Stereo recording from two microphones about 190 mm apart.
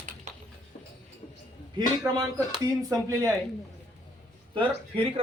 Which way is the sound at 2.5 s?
20° right (ahead or behind).